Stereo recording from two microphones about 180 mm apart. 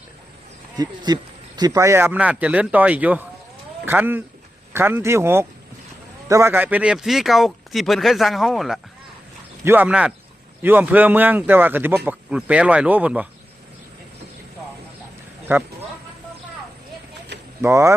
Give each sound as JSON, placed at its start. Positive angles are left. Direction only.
{"t": 0.8, "sound": "a man's voice", "side_deg": -20}
{"t": 17.6, "sound": "a man's voice", "side_deg": -15}